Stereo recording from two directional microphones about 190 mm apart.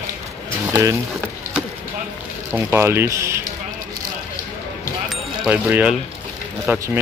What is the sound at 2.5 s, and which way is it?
Speech, 10° right (ahead or behind).